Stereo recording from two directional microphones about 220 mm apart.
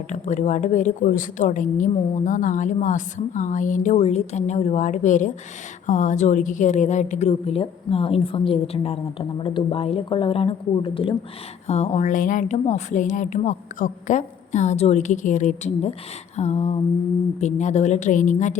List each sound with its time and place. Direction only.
0.1 s a woman's voice: 35° left (ahead or behind)